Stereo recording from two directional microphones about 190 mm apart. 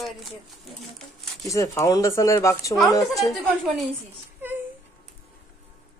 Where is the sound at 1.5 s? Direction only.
15° left (ahead or behind).